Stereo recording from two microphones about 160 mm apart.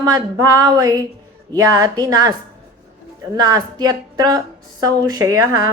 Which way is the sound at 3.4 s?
25° right (ahead or behind).